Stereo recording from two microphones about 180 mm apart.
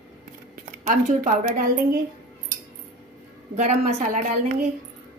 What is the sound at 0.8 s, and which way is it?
A woman's voice, 45° right (ahead or behind).